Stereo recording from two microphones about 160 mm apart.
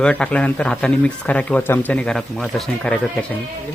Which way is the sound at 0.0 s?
5° left (ahead or behind).